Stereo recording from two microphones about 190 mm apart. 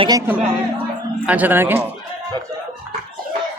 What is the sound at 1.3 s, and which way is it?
Speech, 10° right (ahead or behind).